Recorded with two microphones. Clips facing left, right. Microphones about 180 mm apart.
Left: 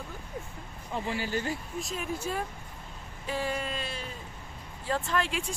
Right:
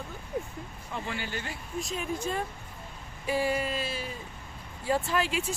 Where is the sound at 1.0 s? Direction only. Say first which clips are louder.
Left 6 dB; 35° left (ahead or behind).